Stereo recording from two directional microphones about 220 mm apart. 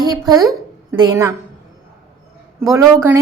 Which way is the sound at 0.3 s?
15° right (ahead or behind).